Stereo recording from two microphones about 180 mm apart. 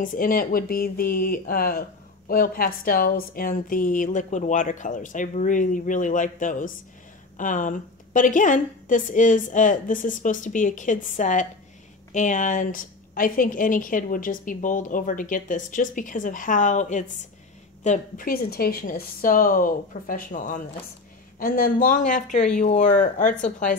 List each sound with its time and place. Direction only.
0.0 s speech: 50° left (ahead or behind)